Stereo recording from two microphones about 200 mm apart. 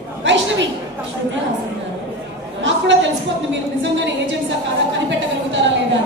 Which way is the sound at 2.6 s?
65° right (ahead or behind).